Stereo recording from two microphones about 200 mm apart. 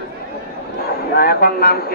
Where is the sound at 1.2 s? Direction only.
50° left (ahead or behind).